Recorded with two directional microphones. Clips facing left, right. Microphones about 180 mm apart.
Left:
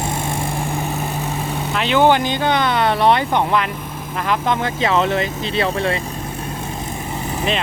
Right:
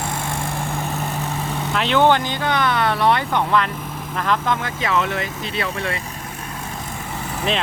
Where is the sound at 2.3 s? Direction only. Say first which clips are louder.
Left 3 dB; 20° left (ahead or behind).